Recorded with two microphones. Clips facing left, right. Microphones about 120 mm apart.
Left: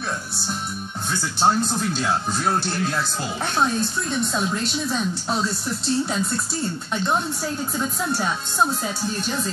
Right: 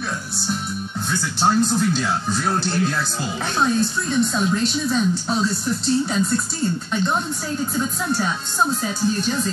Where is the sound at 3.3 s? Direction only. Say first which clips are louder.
Right 2 dB; 10° left (ahead or behind).